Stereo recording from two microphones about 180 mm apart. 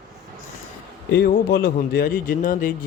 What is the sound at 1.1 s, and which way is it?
Speech, 65° left (ahead or behind).